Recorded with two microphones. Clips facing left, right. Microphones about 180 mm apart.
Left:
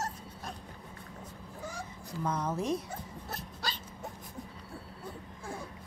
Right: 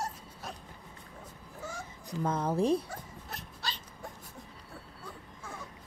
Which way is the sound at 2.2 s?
30° right (ahead or behind).